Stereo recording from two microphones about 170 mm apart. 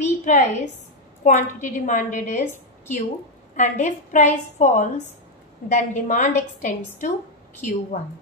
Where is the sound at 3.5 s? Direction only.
45° left (ahead or behind).